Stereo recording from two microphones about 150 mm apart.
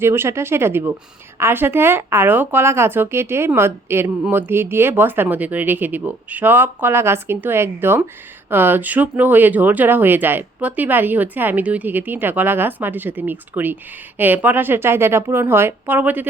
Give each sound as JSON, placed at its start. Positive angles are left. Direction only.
{"t": 0.0, "sound": "speech", "side_deg": -15}